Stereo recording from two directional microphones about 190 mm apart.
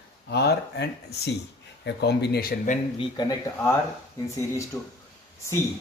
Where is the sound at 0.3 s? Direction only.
60° left (ahead or behind).